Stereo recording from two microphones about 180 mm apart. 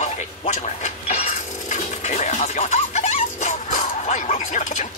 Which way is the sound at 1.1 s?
40° left (ahead or behind).